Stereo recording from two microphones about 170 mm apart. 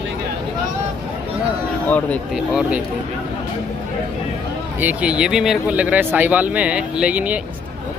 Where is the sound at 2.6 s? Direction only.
5° right (ahead or behind).